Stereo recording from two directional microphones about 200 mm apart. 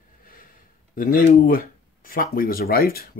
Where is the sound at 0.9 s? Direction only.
45° left (ahead or behind).